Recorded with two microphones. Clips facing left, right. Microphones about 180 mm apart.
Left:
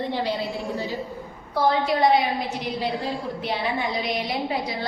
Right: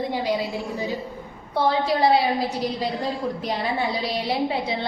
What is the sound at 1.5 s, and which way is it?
A woman's voice, 30° right (ahead or behind).